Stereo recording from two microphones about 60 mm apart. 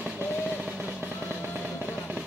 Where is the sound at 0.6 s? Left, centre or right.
Right.